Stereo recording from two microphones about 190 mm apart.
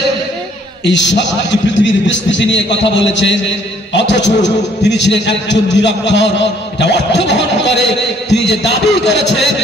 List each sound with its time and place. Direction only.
0.8 s a man's voice: 65° left (ahead or behind)